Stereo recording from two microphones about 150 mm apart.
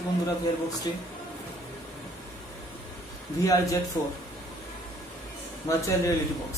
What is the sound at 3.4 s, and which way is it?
Speech, 20° left (ahead or behind).